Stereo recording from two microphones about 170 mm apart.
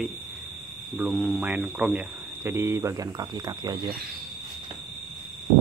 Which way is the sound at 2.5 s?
15° right (ahead or behind).